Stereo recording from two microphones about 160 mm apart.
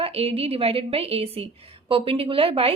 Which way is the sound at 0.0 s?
40° right (ahead or behind).